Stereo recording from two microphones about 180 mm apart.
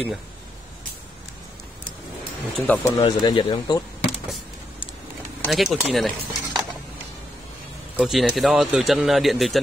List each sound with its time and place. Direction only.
2.5 s speech: 10° left (ahead or behind)
3.0 s speech: 25° left (ahead or behind)
5.4 s speech: centre (ahead or behind)
8.0 s speech: centre (ahead or behind)